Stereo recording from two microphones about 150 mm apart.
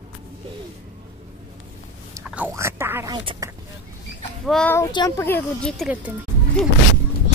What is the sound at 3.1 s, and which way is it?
Speech, 25° right (ahead or behind).